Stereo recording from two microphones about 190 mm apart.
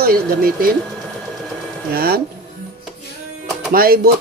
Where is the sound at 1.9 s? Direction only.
55° right (ahead or behind).